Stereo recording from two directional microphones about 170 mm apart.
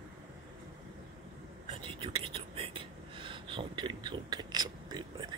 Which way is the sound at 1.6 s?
30° right (ahead or behind).